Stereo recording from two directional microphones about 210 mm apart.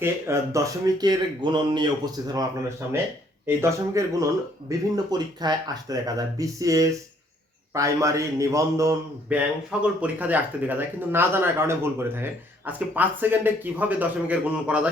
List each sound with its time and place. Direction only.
0.0 s speech: 15° right (ahead or behind)
3.4 s speech: 15° right (ahead or behind)